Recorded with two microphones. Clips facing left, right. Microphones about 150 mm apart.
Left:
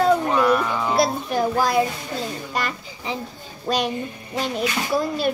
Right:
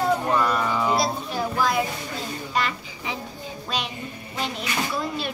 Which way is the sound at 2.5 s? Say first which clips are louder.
Right 3 dB; 40° left (ahead or behind).